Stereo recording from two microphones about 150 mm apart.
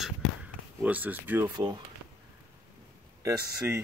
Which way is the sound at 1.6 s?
30° right (ahead or behind).